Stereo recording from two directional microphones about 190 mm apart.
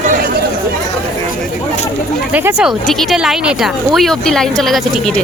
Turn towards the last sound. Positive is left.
turn(degrees=0)  # may be behind; listen again after turning